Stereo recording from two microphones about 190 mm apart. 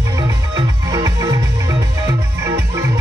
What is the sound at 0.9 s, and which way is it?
Music, 20° right (ahead or behind).